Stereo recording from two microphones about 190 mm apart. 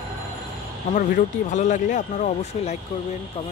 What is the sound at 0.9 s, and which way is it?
Speech, 40° left (ahead or behind).